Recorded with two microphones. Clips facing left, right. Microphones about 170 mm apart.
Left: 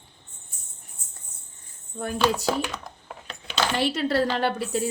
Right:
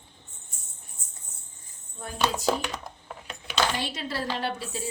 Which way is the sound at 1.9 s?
65° left (ahead or behind).